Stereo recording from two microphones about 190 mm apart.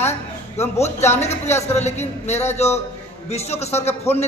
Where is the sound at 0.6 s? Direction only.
35° left (ahead or behind).